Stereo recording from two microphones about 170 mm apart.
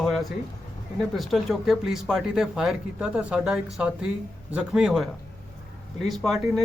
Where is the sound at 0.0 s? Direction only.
Centre (ahead or behind).